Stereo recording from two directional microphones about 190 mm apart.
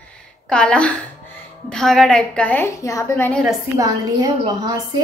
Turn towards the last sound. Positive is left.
turn(degrees=-20)  # may be behind; listen again after turning